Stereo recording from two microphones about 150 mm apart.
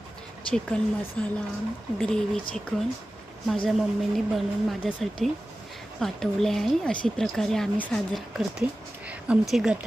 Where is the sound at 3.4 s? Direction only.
Centre (ahead or behind).